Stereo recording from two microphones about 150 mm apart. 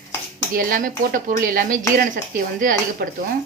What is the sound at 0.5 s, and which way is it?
Speech, 70° right (ahead or behind).